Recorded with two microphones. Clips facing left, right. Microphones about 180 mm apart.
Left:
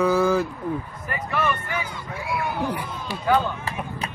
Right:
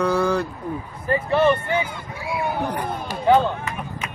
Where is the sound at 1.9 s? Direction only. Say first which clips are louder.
Right 1 dB; 60° right (ahead or behind).